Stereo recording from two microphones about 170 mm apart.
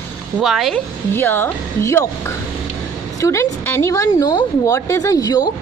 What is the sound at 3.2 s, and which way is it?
Speech, 15° left (ahead or behind).